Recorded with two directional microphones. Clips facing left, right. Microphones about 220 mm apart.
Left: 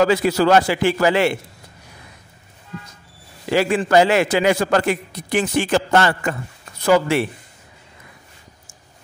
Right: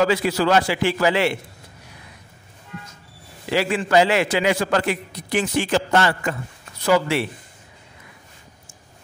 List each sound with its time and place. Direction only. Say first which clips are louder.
0.0 s a man's voice: left 3 dB; 45° left (ahead or behind)
3.4 s a man's voice: left 4 dB; 45° left (ahead or behind)